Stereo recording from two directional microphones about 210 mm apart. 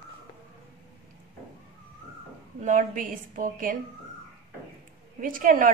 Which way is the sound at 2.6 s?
40° right (ahead or behind).